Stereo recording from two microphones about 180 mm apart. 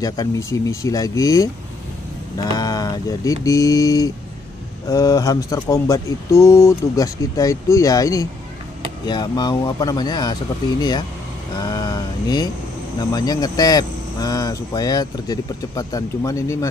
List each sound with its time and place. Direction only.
0.0 s speech: 20° left (ahead or behind)
11.5 s a sound: 20° left (ahead or behind)
13.1 s speech: 20° left (ahead or behind)